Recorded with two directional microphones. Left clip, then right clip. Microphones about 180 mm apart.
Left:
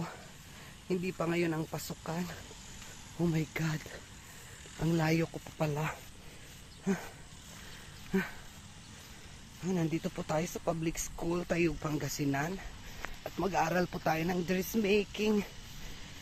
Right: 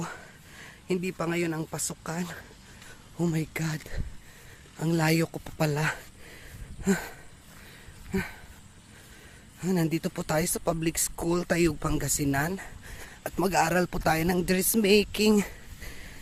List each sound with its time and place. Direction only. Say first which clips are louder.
0.9 s speech: right 4 dB; 25° right (ahead or behind)
1.9 s speech: right 4 dB; 30° right (ahead or behind)
4.8 s speech: right 5 dB; 25° right (ahead or behind)
5.5 s speech: right 7 dB; 50° right (ahead or behind)
9.6 s speech: right 6 dB; 45° right (ahead or behind)